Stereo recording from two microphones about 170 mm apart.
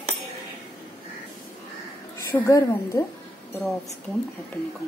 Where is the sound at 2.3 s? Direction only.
20° left (ahead or behind).